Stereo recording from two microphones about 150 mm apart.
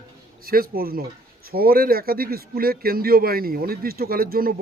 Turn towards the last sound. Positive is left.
turn(degrees=-75)  # may be behind; listen again after turning